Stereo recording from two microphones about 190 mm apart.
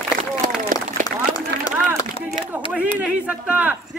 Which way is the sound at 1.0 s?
20° left (ahead or behind).